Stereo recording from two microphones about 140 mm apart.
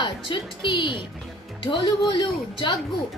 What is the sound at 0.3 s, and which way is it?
Speech, 35° left (ahead or behind).